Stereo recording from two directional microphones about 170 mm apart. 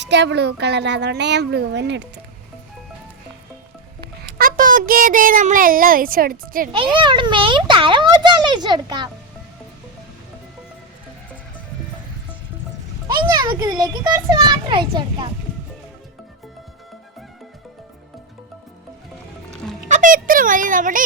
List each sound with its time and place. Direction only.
0.0 s a woman's voice: 90° right
4.2 s a child's voice: 60° right (ahead or behind)
6.7 s a child's voice: 30° right (ahead or behind)
13.2 s a child's voice: 25° right (ahead or behind)
19.9 s speech: 50° right (ahead or behind)